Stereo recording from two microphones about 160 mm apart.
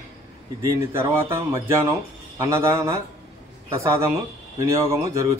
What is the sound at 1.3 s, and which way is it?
Speech, 15° right (ahead or behind).